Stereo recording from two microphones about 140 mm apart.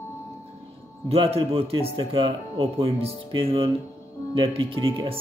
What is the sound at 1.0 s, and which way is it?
Speech, 45° right (ahead or behind).